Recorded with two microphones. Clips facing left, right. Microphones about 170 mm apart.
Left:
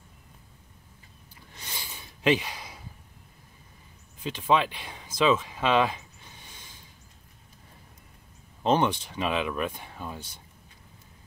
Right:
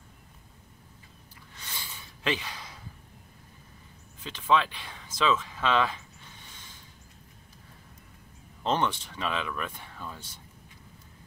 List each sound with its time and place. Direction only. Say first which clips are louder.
1.6 s a sound: left 2 dB; 15° left (ahead or behind)
4.2 s speech: left 1 dB; 15° left (ahead or behind)
8.6 s speech: left 4 dB; 15° left (ahead or behind)